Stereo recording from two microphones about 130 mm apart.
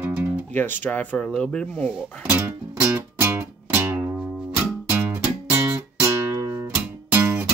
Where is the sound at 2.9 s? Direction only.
20° right (ahead or behind).